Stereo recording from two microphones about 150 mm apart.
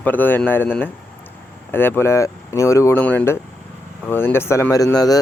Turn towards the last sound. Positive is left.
turn(degrees=25)  # may be behind; listen again after turning